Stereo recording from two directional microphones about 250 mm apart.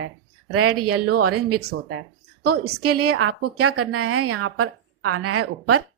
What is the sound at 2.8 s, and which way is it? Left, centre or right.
A woman's voice, right.